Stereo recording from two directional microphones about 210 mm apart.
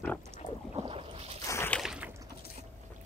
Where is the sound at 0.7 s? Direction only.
25° right (ahead or behind).